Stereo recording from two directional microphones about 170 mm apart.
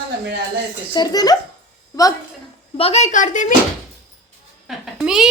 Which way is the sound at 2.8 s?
40° left (ahead or behind).